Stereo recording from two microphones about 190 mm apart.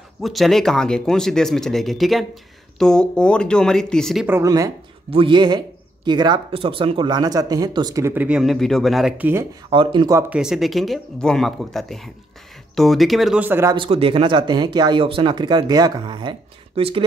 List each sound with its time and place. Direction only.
0.2 s speech: centre (ahead or behind)
4.3 s speech: 15° right (ahead or behind); by 9.3 s centre (ahead or behind)
9.7 s speech: 25° right (ahead or behind)
10.3 s speech: centre (ahead or behind)
13.7 s speech: 30° right (ahead or behind)